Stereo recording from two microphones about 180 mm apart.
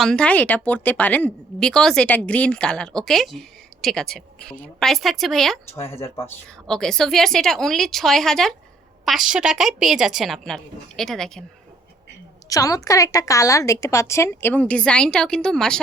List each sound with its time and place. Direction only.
0.0 s a woman's voice: 5° left (ahead or behind)
6.7 s a woman's voice: centre (ahead or behind)
12.5 s a woman's voice: 20° left (ahead or behind)